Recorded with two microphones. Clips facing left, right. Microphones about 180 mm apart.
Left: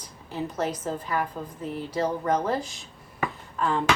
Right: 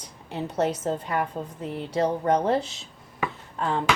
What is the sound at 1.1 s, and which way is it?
A woman's voice, 30° right (ahead or behind).